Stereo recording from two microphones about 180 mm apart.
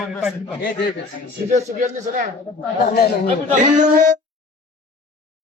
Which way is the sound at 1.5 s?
45° right (ahead or behind).